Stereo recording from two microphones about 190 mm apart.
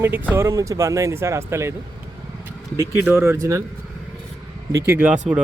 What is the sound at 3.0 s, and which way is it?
Speech, 15° right (ahead or behind).